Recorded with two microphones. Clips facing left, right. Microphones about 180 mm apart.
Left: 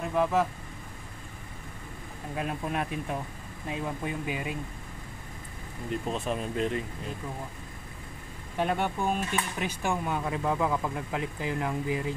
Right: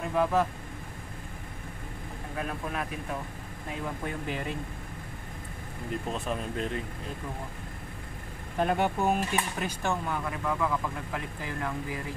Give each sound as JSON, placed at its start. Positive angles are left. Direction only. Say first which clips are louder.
{"t": 0.1, "sound": "speech", "louder": "even", "side_deg": 5}
{"t": 2.3, "sound": "speech", "louder": "left 3 dB", "side_deg": 25}
{"t": 6.1, "sound": "speech", "louder": "left 2 dB", "side_deg": 0}
{"t": 8.5, "sound": "speech", "louder": "right 2 dB", "side_deg": 0}
{"t": 9.7, "sound": "speech", "louder": "left 1 dB", "side_deg": 10}
{"t": 10.1, "sound": "speech", "louder": "left 3 dB", "side_deg": 25}